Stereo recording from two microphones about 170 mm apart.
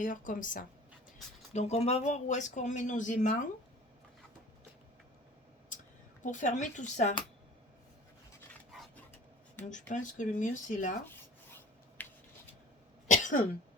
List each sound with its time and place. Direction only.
0.0 s speech: 50° left (ahead or behind)
1.5 s speech: 40° left (ahead or behind)
6.2 s speech: 45° left (ahead or behind)
9.6 s speech: 45° left (ahead or behind)
12.0 s a sound: 10° left (ahead or behind)
13.1 s cough: 45° left (ahead or behind)